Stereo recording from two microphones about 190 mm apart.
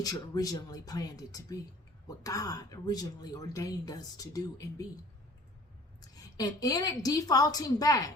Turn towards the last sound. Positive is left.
turn(degrees=20)  # may be behind; listen again after turning